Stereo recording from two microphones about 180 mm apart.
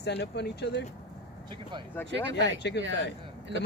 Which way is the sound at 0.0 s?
70° left (ahead or behind).